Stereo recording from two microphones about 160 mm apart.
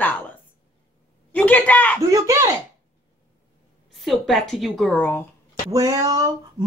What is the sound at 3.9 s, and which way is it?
Music, centre (ahead or behind).